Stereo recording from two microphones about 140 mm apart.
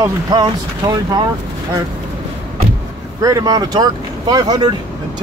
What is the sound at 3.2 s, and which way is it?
Speech, 25° right (ahead or behind).